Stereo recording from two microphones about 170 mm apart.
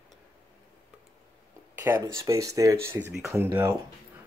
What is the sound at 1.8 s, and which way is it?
Speech, 10° right (ahead or behind).